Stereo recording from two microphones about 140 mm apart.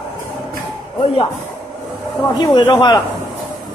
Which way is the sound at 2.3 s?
30° left (ahead or behind).